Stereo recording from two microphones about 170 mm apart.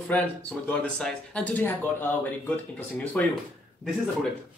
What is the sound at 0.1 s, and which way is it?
Speech, 10° left (ahead or behind).